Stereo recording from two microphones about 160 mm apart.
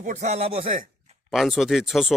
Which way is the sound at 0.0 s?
50° right (ahead or behind).